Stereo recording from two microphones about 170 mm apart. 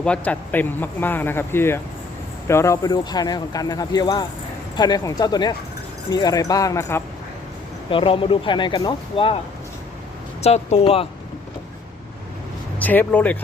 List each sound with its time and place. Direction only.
0.0 s speech: 5° left (ahead or behind)
7.9 s speech: 30° left (ahead or behind)
10.4 s speech: 40° left (ahead or behind)
12.8 s speech: 10° left (ahead or behind)